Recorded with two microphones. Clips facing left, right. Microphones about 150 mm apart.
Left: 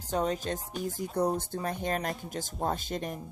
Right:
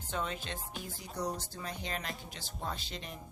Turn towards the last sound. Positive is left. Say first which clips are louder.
# left 9 dB
turn(degrees=50)  # may be behind; listen again after turning